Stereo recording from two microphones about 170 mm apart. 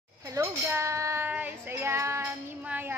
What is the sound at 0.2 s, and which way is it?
Child singing, 15° right (ahead or behind).